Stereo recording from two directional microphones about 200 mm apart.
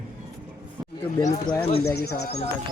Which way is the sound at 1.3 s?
20° left (ahead or behind).